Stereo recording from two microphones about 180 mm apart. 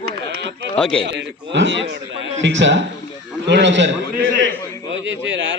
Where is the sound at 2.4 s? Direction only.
90° right.